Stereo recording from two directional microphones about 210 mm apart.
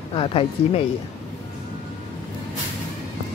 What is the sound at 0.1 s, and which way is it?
Speech, 25° left (ahead or behind).